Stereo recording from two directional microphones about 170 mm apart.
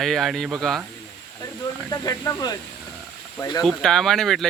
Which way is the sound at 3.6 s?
Centre (ahead or behind).